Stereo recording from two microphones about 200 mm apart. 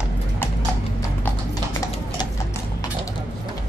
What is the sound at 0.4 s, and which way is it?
Clip-clop, 10° left (ahead or behind).